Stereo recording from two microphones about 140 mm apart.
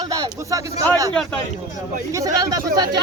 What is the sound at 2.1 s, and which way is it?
Speech, 25° right (ahead or behind).